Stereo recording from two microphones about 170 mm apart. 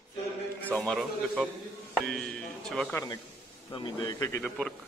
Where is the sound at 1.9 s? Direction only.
5° left (ahead or behind).